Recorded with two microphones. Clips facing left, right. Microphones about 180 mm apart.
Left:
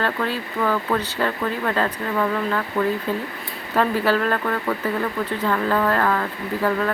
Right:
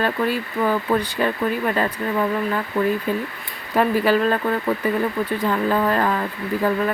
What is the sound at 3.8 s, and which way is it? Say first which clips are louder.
Speech: right 2 dB; 15° right (ahead or behind).